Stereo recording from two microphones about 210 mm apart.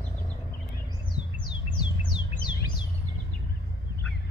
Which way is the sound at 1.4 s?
20° left (ahead or behind).